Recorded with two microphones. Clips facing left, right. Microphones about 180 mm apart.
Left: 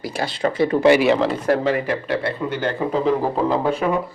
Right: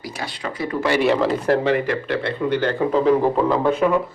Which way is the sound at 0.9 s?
Centre (ahead or behind).